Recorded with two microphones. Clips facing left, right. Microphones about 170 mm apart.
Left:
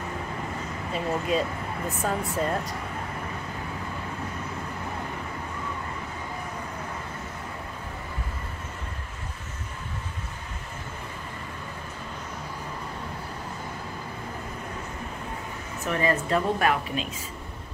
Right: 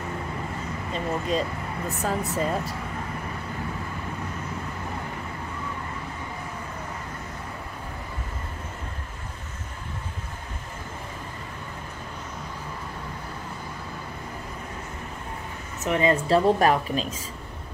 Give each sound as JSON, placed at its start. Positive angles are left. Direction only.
{"t": 0.9, "sound": "speech", "side_deg": 5}
{"t": 15.8, "sound": "a woman's voice", "side_deg": -20}